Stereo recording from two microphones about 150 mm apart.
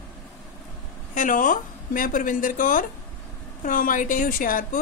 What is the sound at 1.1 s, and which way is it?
A woman's voice, 60° left (ahead or behind).